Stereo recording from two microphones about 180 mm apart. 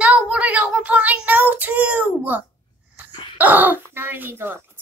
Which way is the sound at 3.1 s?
25° left (ahead or behind).